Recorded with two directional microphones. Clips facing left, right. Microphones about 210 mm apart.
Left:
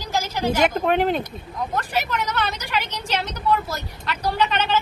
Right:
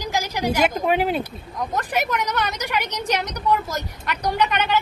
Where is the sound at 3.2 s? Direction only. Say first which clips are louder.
Left 2 dB; 15° right (ahead or behind).